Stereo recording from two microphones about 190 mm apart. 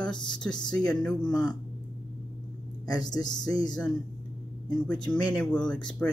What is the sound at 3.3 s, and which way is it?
Speech, 5° left (ahead or behind).